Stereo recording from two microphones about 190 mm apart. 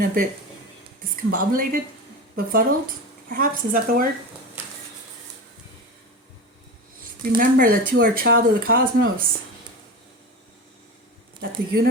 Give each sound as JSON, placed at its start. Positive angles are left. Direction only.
{"t": 0.0, "sound": "speech", "side_deg": -50}
{"t": 7.3, "sound": "speech", "side_deg": -50}
{"t": 11.3, "sound": "speech", "side_deg": -55}